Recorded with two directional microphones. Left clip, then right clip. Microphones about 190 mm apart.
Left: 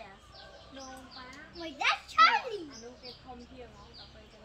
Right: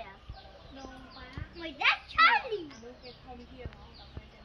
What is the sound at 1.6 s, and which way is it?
Children playing, 70° left (ahead or behind).